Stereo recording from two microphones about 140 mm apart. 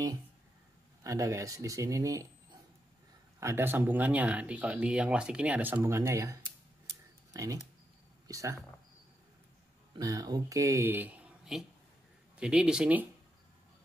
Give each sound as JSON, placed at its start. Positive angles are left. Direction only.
{"t": 1.0, "sound": "speech", "side_deg": -25}
{"t": 6.9, "sound": "a sound", "side_deg": -25}
{"t": 8.3, "sound": "speech", "side_deg": -25}
{"t": 9.9, "sound": "speech", "side_deg": -25}